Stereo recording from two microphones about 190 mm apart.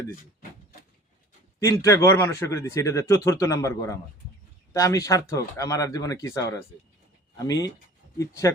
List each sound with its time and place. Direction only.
1.5 s speech: 15° left (ahead or behind)